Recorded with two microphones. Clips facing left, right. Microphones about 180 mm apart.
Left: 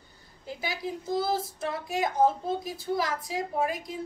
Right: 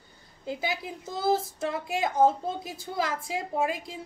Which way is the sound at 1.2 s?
25° right (ahead or behind).